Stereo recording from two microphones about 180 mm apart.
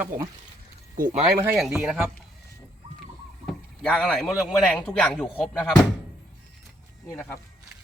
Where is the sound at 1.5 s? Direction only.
Centre (ahead or behind).